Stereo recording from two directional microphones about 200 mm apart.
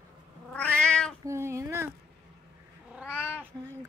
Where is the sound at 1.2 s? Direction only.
15° right (ahead or behind).